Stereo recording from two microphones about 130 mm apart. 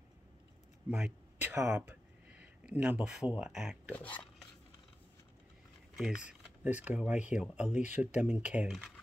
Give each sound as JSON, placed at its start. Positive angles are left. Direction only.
{"t": 0.8, "sound": "speech", "side_deg": -5}
{"t": 1.4, "sound": "speech", "side_deg": -15}
{"t": 3.9, "sound": "speech", "side_deg": 10}
{"t": 5.9, "sound": "speech", "side_deg": -5}